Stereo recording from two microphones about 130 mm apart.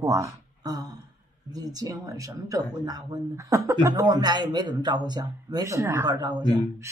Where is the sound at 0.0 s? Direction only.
25° right (ahead or behind).